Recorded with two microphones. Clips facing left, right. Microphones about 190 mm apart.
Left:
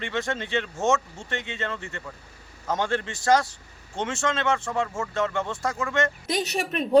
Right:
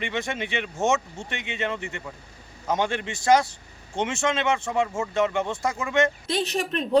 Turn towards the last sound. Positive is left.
turn(degrees=10)  # may be behind; listen again after turning